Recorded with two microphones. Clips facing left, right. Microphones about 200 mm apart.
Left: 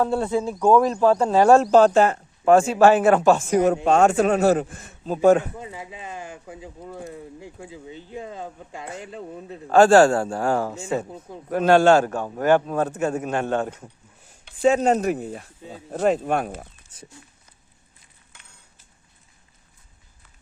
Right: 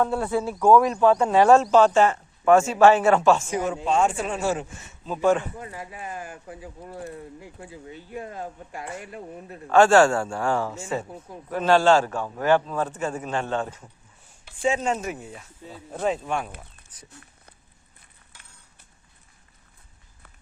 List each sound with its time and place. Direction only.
0.0 s speech: 25° left (ahead or behind)
2.8 s a man's voice: 50° left (ahead or behind)
3.8 s a man's voice: 65° left (ahead or behind); by 5.5 s 40° left (ahead or behind)
5.5 s a man's voice: 15° left (ahead or behind); by 13.8 s 60° left (ahead or behind)
14.7 s speech: 40° left (ahead or behind)
15.4 s a man's voice: 50° left (ahead or behind)
16.9 s speech: 25° left (ahead or behind)